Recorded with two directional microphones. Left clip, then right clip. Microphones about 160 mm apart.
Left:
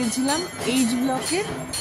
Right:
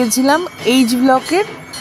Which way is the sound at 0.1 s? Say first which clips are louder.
Right 11 dB; 60° right (ahead or behind).